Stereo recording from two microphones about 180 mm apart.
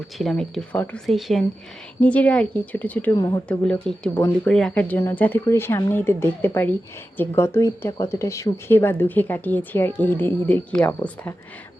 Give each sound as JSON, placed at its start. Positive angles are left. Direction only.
{"t": 0.2, "sound": "speech", "side_deg": 0}
{"t": 3.2, "sound": "speech", "side_deg": 20}
{"t": 3.7, "sound": "speech", "side_deg": 5}